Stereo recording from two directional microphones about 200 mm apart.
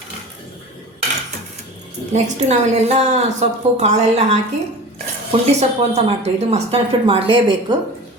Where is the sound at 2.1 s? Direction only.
35° right (ahead or behind).